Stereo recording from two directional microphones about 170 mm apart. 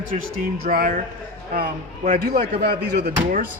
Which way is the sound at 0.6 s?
60° right (ahead or behind).